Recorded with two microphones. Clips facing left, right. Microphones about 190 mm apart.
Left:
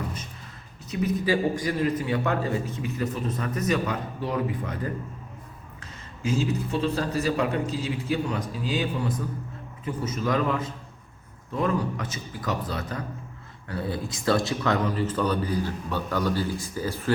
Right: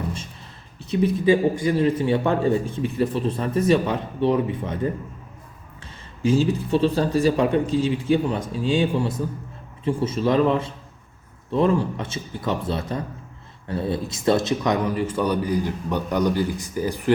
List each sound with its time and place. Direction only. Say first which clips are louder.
0.8 s a man's voice: right 5 dB; 30° right (ahead or behind)